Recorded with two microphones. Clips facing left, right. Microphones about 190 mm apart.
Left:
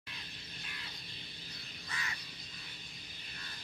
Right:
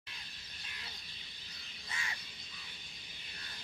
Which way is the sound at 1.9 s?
25° right (ahead or behind).